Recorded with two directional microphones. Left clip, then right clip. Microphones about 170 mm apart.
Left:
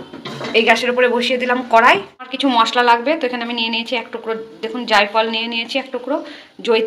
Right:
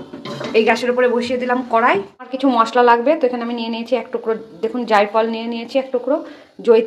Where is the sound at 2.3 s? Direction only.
35° right (ahead or behind).